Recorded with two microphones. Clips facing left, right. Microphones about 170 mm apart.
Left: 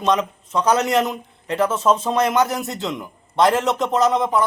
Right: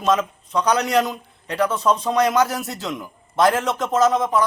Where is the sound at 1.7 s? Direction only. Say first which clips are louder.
Left 1 dB; 25° left (ahead or behind).